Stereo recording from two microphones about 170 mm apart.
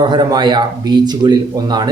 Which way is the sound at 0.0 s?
25° right (ahead or behind).